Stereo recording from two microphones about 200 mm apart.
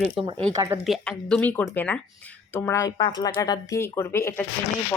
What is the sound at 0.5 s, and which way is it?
Speech, 15° right (ahead or behind).